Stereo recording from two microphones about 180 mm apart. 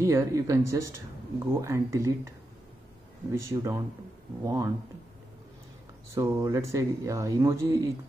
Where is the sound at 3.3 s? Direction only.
15° right (ahead or behind).